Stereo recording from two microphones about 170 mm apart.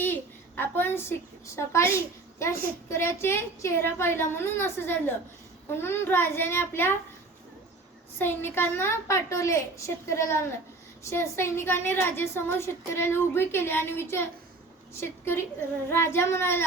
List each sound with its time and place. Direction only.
0.0 s a sound: 10° left (ahead or behind)
2.4 s a woman's voice: 15° left (ahead or behind)
8.2 s a woman's voice: 15° left (ahead or behind)